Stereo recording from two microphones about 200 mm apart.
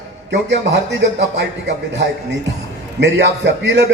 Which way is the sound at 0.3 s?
60° right (ahead or behind).